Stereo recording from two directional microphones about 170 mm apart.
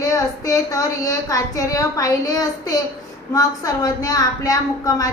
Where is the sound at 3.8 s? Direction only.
20° left (ahead or behind).